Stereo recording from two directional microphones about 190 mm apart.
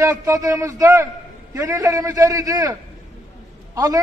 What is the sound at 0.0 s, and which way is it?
A man's voice, 15° right (ahead or behind).